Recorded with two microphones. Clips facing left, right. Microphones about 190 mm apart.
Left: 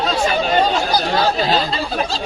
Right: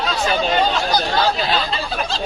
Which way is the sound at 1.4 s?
40° left (ahead or behind).